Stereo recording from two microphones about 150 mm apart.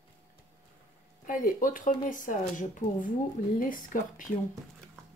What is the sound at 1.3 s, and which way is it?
Speech, 65° left (ahead or behind).